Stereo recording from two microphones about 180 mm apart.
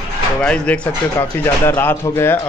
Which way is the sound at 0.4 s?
5° left (ahead or behind).